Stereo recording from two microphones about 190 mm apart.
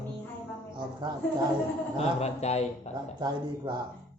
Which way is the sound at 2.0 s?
35° left (ahead or behind).